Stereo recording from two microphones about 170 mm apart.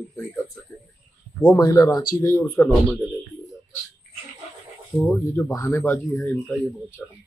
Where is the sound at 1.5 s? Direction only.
20° left (ahead or behind).